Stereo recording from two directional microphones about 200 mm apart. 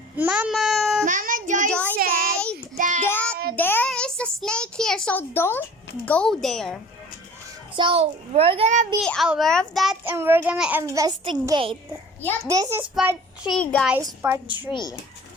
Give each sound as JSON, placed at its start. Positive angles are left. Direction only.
{"t": 0.2, "sound": "a child's voice", "side_deg": -5}
{"t": 1.0, "sound": "a child's voice", "side_deg": -40}
{"t": 1.7, "sound": "child singing", "side_deg": 10}
{"t": 2.0, "sound": "child singing", "side_deg": -45}
{"t": 3.1, "sound": "child singing", "side_deg": 10}
{"t": 3.5, "sound": "a child's voice", "side_deg": 10}
{"t": 7.8, "sound": "a child's voice", "side_deg": -25}
{"t": 9.0, "sound": "a child's voice", "side_deg": 0}
{"t": 10.0, "sound": "a child's voice", "side_deg": -10}
{"t": 13.0, "sound": "a child's voice", "side_deg": -5}
{"t": 13.6, "sound": "a child's voice", "side_deg": 5}
{"t": 13.9, "sound": "a child's voice", "side_deg": -10}
{"t": 14.7, "sound": "speech", "side_deg": 20}